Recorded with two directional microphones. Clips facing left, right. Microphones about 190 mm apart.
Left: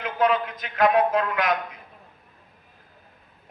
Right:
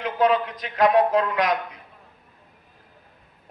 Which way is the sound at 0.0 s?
30° right (ahead or behind).